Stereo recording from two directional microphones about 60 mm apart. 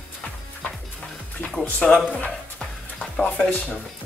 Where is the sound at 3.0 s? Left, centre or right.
Left.